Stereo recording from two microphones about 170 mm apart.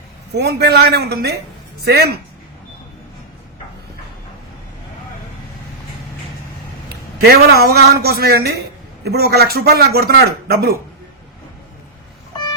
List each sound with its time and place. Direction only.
0.3 s a man's voice: 75° right (ahead or behind)
7.2 s a man's voice: 70° right (ahead or behind)